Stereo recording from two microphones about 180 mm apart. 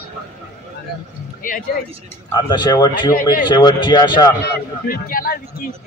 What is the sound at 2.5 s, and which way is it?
A man's voice, 25° left (ahead or behind).